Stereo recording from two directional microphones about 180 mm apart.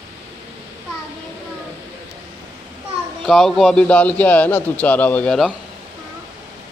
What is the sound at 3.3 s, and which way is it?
A man's voice, centre (ahead or behind).